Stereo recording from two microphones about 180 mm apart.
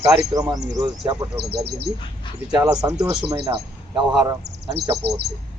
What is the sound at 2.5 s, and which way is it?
A man's voice, 20° right (ahead or behind).